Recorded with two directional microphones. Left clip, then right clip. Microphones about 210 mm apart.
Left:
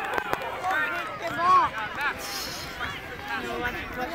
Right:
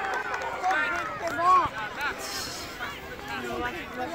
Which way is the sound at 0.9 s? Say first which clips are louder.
Even; 45° right (ahead or behind).